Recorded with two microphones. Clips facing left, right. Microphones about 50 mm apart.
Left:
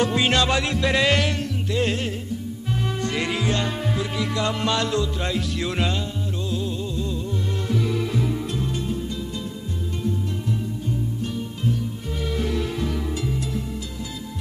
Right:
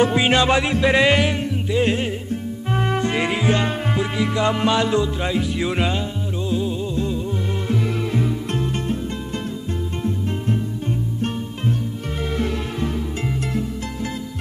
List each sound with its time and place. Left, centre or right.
0.0 s music: centre
2.3 s music: right
3.0 s music: right
8.5 s music: right
13.2 s music: right